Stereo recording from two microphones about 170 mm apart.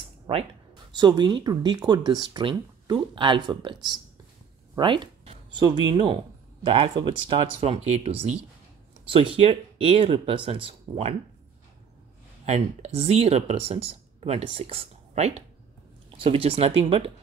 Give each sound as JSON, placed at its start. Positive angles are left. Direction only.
{"t": 0.9, "sound": "speech", "side_deg": -25}
{"t": 12.4, "sound": "speech", "side_deg": -40}